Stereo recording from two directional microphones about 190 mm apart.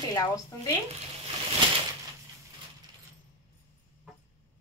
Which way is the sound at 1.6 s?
25° right (ahead or behind).